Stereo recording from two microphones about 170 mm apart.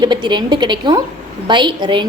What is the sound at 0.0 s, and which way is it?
A woman's voice, 25° right (ahead or behind).